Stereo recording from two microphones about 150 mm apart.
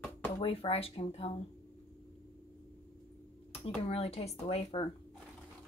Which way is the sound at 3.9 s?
40° left (ahead or behind).